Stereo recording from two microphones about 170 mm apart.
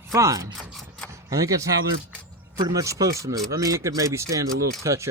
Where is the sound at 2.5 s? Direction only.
20° right (ahead or behind).